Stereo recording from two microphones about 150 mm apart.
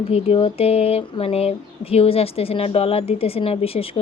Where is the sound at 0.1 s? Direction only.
40° left (ahead or behind).